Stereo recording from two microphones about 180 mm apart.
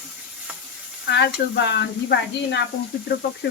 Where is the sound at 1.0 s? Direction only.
75° left (ahead or behind).